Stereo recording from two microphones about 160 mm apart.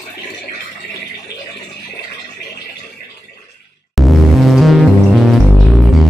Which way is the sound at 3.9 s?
Centre (ahead or behind).